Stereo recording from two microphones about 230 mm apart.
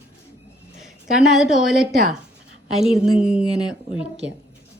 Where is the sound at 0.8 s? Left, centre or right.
Centre.